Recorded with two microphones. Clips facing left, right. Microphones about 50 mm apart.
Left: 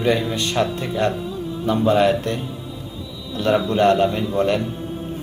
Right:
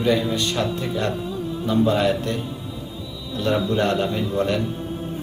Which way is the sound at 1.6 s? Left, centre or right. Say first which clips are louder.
Left 2 dB; left.